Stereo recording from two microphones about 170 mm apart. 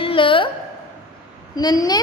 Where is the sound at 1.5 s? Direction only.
20° left (ahead or behind).